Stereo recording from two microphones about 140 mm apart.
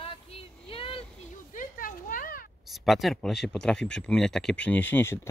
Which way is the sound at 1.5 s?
80° left.